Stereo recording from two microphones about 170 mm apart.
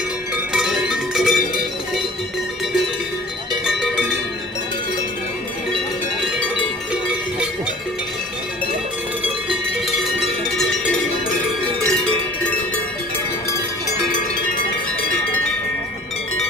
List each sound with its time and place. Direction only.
0.5 s music: 5° right (ahead or behind)
3.6 s cowbell: 5° right (ahead or behind)
9.2 s cowbell: 5° right (ahead or behind)